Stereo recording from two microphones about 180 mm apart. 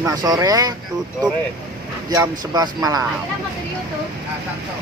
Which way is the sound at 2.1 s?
20° right (ahead or behind).